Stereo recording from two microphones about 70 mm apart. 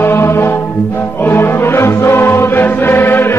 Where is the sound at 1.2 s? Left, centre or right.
Left.